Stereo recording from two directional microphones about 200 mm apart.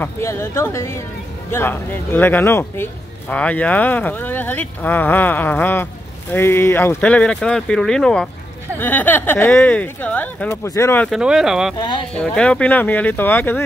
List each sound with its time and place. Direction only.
0.0 s speech: 15° left (ahead or behind)
11.1 s speech: 5° right (ahead or behind)
11.8 s speech: 25° left (ahead or behind)
12.2 s speech: 5° left (ahead or behind)